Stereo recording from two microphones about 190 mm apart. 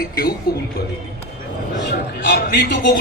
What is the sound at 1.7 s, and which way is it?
Speech, 65° left (ahead or behind).